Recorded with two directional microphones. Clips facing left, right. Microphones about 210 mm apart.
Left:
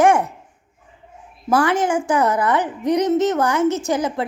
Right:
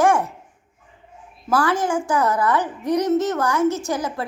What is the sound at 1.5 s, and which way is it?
A woman's voice, 20° left (ahead or behind).